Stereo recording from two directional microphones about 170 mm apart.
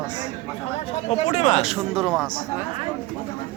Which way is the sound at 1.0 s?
40° left (ahead or behind).